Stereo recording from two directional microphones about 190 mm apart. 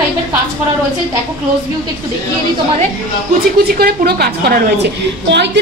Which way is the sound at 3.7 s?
55° right (ahead or behind).